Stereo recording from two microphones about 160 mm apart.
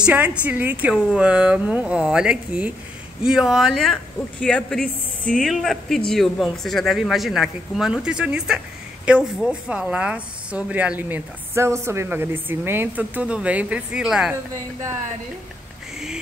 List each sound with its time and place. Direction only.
0.0 s a woman's voice: 10° right (ahead or behind)
14.3 s speech: 20° right (ahead or behind)